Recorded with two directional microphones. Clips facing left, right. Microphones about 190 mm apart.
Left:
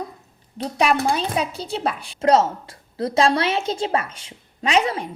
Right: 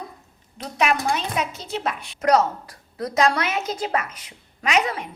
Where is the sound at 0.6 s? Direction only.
35° left (ahead or behind).